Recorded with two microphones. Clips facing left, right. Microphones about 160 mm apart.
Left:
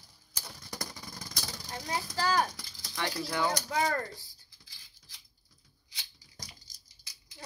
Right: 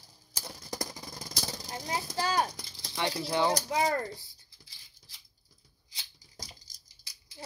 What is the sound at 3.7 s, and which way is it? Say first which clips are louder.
Speech: right 2 dB; 25° right (ahead or behind).